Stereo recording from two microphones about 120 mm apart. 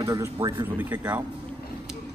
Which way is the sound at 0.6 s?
15° right (ahead or behind).